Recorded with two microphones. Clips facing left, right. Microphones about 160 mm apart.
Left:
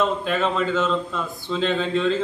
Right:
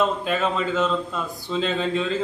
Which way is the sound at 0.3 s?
Centre (ahead or behind).